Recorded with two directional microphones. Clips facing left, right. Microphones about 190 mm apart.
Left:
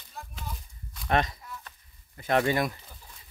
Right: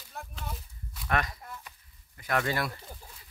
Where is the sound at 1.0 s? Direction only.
25° left (ahead or behind).